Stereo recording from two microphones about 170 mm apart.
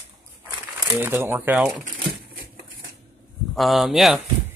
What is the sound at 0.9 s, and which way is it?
Speech, 15° right (ahead or behind).